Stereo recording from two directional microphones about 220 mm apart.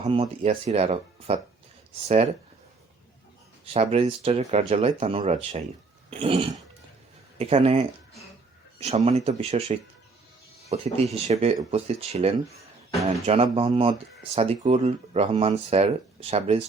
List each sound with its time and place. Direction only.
0.0 s speech: 25° right (ahead or behind)
3.7 s speech: 25° right (ahead or behind)